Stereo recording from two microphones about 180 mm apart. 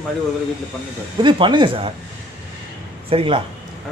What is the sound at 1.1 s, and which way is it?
Speech, 25° right (ahead or behind).